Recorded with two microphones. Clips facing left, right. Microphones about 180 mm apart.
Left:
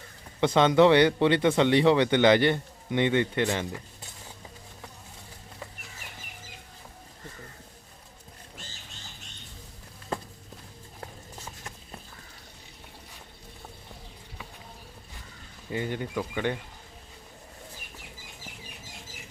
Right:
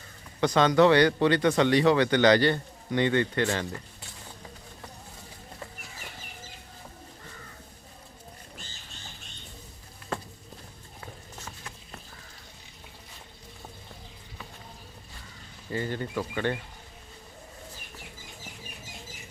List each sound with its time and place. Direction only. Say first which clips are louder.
0.3 s speech: left 1 dB; 20° left (ahead or behind)
15.7 s speech: even; 15° left (ahead or behind)